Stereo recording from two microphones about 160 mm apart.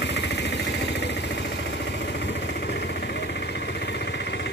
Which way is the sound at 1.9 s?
90° left.